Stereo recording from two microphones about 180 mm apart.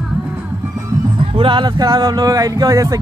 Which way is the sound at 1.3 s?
25° right (ahead or behind).